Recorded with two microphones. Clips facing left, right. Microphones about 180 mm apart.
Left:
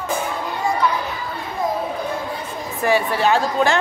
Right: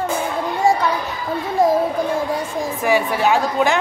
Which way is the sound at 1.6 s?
90° right.